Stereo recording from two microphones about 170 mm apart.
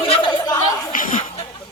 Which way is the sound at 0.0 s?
30° left (ahead or behind).